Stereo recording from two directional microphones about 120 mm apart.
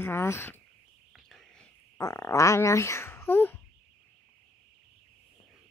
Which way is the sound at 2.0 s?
25° left (ahead or behind).